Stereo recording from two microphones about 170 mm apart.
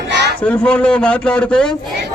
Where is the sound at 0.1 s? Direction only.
80° right.